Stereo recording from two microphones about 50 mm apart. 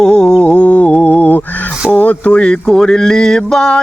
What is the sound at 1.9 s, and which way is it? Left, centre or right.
Speech, left.